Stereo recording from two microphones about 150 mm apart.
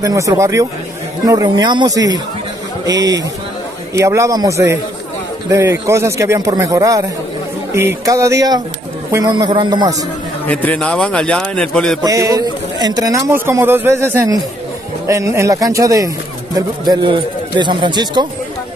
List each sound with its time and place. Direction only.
0.0 s a man's voice: 20° right (ahead or behind)
10.4 s a man's voice: 10° left (ahead or behind)
12.0 s a man's voice: 20° right (ahead or behind)